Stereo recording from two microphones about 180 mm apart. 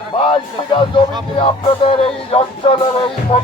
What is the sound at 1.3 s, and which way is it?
Music, 30° left (ahead or behind).